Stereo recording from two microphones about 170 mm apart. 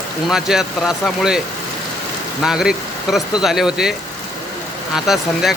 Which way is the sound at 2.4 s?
5° right (ahead or behind).